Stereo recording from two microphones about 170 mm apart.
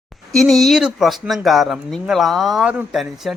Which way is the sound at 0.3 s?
Centre (ahead or behind).